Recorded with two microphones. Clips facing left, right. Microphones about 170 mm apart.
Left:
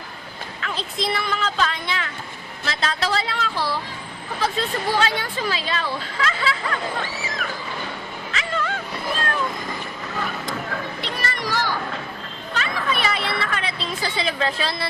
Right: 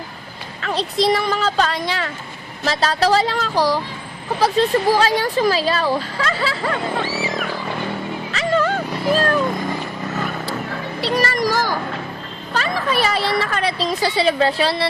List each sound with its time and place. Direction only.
0.6 s speech: 35° right (ahead or behind)
8.3 s music: 40° right (ahead or behind)
11.0 s a sound: 40° right (ahead or behind)